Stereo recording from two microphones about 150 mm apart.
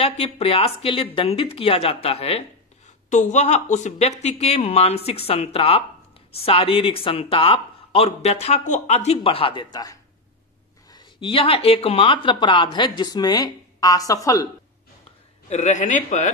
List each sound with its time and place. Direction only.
0.0 s speech: 40° left (ahead or behind)
3.1 s a woman's voice: 55° left (ahead or behind); by 14.5 s 20° left (ahead or behind)
15.5 s a woman's voice: 50° left (ahead or behind)